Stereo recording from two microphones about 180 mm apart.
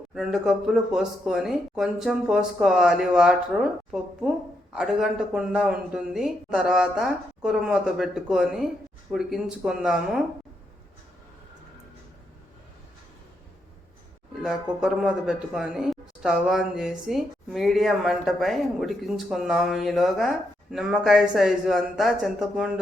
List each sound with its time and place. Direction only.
0.1 s speech: centre (ahead or behind)
14.4 s speech: centre (ahead or behind)